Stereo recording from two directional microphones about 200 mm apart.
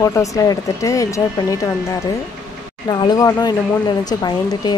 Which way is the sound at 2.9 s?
20° left (ahead or behind).